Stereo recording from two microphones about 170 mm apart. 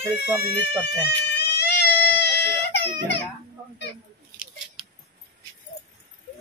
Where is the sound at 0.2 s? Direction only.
80° left.